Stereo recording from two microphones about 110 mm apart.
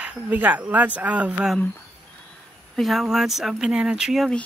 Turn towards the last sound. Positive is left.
turn(degrees=-5)  # may be behind; listen again after turning